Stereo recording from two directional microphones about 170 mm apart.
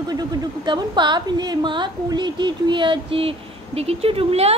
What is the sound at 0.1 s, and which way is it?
A woman's voice, 25° right (ahead or behind).